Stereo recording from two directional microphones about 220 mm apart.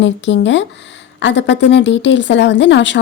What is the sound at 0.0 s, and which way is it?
Speech, 55° left (ahead or behind).